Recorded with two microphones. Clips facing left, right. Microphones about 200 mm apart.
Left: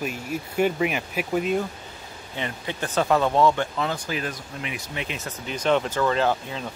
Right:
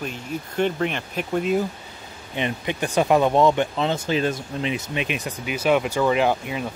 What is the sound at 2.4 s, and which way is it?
Speech, 20° right (ahead or behind).